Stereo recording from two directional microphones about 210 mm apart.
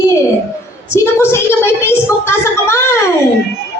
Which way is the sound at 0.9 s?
10° left (ahead or behind).